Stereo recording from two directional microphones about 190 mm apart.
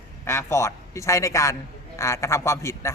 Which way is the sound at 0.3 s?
15° left (ahead or behind).